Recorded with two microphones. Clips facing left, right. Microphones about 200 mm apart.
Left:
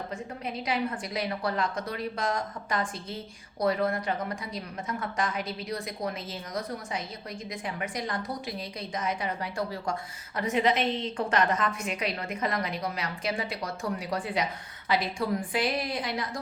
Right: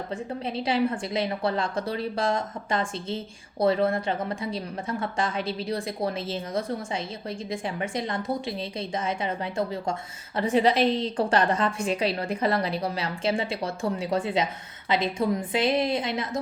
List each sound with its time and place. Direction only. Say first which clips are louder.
0.1 s a woman's voice: right 5 dB; 30° right (ahead or behind)